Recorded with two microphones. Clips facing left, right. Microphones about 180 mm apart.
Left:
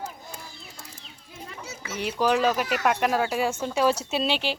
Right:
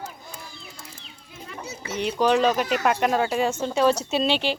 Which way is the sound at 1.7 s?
35° right (ahead or behind).